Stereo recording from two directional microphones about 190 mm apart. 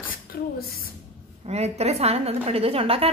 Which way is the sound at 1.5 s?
35° right (ahead or behind).